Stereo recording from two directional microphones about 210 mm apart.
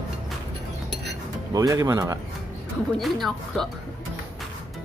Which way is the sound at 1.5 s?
15° right (ahead or behind).